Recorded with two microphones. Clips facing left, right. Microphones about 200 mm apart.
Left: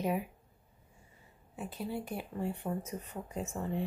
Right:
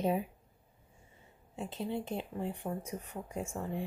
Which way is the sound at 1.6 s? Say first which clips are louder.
Right 1 dB; 25° right (ahead or behind).